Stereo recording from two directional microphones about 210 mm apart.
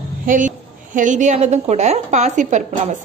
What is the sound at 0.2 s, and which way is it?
A woman's voice, 40° right (ahead or behind).